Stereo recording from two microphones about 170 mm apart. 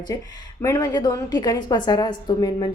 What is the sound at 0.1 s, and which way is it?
A woman's voice, 20° left (ahead or behind).